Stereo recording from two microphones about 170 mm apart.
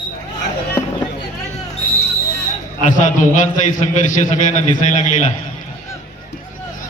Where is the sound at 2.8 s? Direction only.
50° left (ahead or behind).